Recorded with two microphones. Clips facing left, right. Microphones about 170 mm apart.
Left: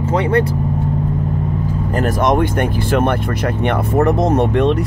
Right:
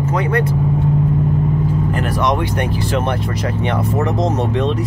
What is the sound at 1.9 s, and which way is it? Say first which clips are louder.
Speech: left 6 dB; 45° left (ahead or behind).